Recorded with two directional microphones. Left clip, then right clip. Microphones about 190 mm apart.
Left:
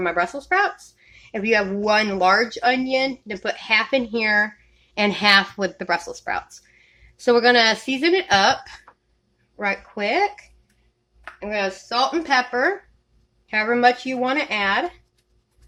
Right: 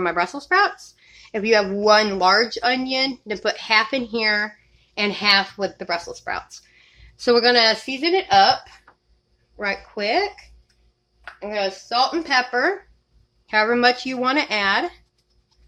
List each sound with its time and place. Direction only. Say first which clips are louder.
0.0 s speech: even; 10° right (ahead or behind); by 4.5 s 15° left (ahead or behind)
4.9 s speech: left 2 dB; 30° left (ahead or behind)
7.2 s speech: even; centre (ahead or behind)
7.5 s speech: even; 20° left (ahead or behind); by 8.7 s 35° left (ahead or behind)
9.6 s speech: left 1 dB; 5° left (ahead or behind)
11.3 s speech: even; 25° left (ahead or behind); by 12.7 s 5° left (ahead or behind)
13.5 s speech: even; 10° right (ahead or behind)